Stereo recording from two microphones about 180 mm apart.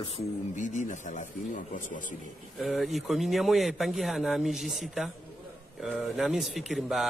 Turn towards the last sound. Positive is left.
turn(degrees=0)  # may be behind; listen again after turning